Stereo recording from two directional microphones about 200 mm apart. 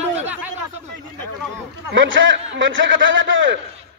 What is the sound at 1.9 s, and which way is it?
A man's voice, 70° right (ahead or behind).